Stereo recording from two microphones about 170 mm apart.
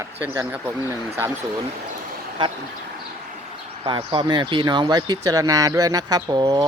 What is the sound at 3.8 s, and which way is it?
Speech, 25° right (ahead or behind).